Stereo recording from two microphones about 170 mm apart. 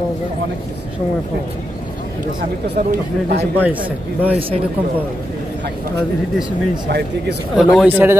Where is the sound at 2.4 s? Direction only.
60° right (ahead or behind).